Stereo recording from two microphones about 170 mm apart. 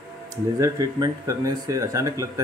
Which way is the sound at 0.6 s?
20° right (ahead or behind).